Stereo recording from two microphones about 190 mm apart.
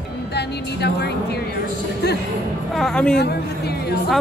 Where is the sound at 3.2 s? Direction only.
55° left (ahead or behind).